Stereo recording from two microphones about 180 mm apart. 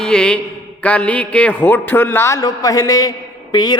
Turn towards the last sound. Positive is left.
turn(degrees=25)  # may be behind; listen again after turning